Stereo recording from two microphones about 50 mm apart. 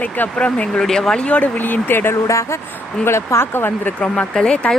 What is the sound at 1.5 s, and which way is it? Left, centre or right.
Speech, left.